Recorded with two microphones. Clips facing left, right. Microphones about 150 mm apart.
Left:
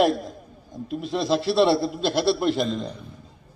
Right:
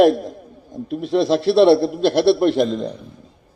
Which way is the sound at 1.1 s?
55° right (ahead or behind).